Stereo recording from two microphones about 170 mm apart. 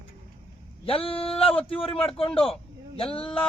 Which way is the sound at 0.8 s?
35° left (ahead or behind).